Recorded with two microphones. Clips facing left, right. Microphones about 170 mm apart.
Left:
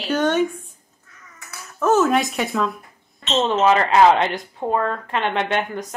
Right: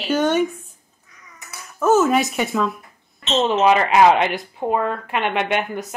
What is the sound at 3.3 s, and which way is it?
Speech, 15° right (ahead or behind).